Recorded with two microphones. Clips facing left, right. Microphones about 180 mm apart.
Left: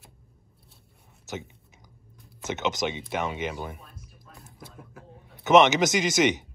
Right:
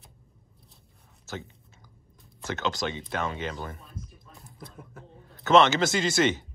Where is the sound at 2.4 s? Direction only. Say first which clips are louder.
Left 2 dB; 20° left (ahead or behind).